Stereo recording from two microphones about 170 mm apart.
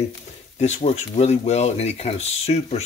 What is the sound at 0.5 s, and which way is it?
Speech, 40° left (ahead or behind).